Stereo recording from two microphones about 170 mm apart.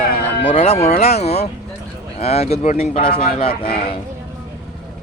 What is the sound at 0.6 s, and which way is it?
Speech, 35° left (ahead or behind).